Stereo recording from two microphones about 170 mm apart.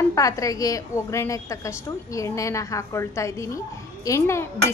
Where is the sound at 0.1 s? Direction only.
20° left (ahead or behind).